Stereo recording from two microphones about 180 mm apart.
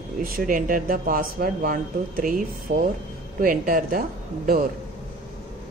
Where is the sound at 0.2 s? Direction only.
50° right (ahead or behind).